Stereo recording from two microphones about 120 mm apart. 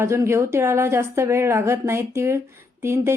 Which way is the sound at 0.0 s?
25° right (ahead or behind).